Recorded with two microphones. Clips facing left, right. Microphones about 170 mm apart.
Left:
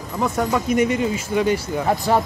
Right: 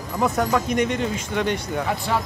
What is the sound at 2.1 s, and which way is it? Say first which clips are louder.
Speech: left 7 dB; 40° left (ahead or behind).